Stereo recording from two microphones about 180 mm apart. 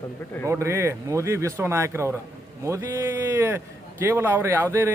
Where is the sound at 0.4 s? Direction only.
15° right (ahead or behind).